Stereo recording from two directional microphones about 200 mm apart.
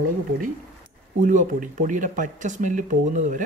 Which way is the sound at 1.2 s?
40° right (ahead or behind).